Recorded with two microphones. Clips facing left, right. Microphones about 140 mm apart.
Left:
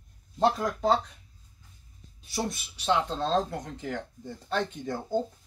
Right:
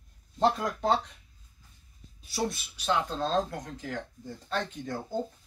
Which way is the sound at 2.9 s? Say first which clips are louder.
Left 2 dB; 25° left (ahead or behind).